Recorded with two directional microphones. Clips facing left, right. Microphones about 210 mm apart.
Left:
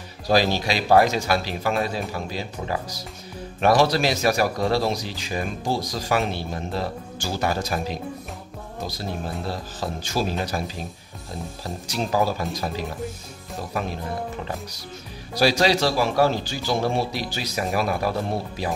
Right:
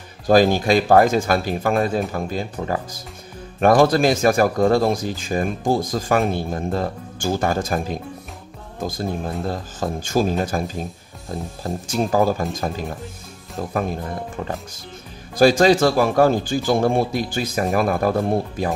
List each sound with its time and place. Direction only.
0.3 s speech: 50° right (ahead or behind)
15.3 s speech: 50° right (ahead or behind)